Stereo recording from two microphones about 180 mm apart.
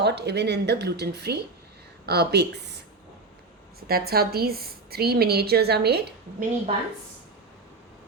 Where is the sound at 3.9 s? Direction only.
60° right (ahead or behind).